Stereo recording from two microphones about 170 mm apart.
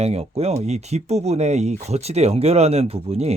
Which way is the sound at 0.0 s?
35° right (ahead or behind).